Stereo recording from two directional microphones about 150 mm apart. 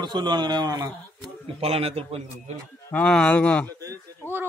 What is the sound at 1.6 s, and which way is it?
Speech, 40° right (ahead or behind).